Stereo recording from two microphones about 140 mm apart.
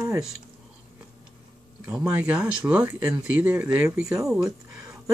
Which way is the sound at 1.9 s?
10° right (ahead or behind).